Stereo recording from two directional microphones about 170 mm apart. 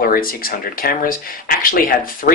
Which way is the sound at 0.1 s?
60° left (ahead or behind).